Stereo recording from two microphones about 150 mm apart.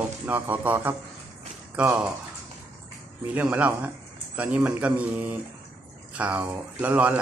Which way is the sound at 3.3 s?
10° right (ahead or behind).